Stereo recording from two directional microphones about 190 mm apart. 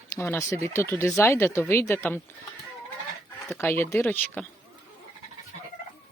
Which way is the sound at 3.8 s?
10° left (ahead or behind).